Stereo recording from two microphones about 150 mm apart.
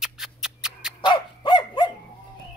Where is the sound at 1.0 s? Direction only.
30° left (ahead or behind).